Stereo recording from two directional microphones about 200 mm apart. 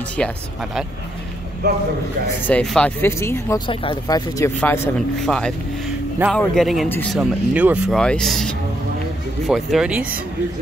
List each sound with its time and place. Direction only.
0.2 s speech: 5° left (ahead or behind)
2.4 s speech: 5° left (ahead or behind)
3.6 s speech: 25° left (ahead or behind)
4.6 s speech: 10° left (ahead or behind)
7.2 s speech: 5° right (ahead or behind)